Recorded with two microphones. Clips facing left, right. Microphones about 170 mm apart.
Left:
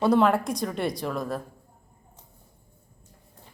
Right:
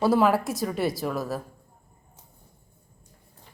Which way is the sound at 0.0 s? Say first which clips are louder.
Even; 5° right (ahead or behind).